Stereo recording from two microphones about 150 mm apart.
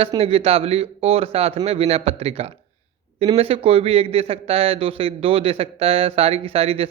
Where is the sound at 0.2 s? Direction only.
40° right (ahead or behind).